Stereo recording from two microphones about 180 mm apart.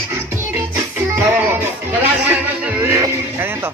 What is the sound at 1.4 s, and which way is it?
Music, 10° right (ahead or behind).